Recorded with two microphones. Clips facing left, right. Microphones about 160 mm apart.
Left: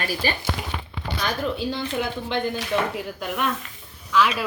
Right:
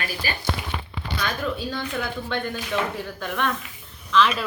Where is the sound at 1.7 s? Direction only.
20° left (ahead or behind).